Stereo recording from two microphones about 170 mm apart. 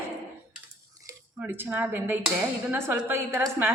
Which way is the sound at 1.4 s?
10° right (ahead or behind).